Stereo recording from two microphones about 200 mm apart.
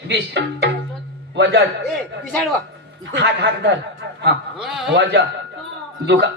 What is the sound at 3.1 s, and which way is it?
Speech, 60° right (ahead or behind).